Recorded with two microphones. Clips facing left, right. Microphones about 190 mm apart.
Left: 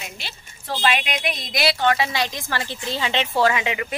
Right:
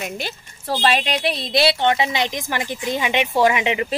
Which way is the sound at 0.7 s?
35° right (ahead or behind).